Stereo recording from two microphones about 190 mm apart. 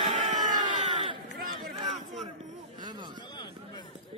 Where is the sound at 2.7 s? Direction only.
25° right (ahead or behind).